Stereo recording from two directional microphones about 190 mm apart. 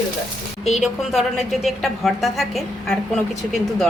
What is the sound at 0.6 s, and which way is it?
A woman's voice, centre (ahead or behind).